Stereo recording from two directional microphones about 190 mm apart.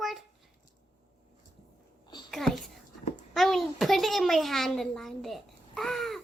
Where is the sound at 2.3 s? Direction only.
Centre (ahead or behind).